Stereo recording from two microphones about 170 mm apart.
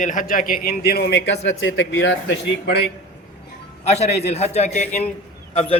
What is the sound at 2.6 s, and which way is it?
Speech, 75° left (ahead or behind).